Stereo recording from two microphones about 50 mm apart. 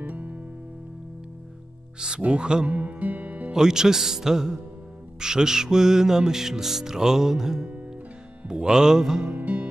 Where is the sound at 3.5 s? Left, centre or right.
Centre.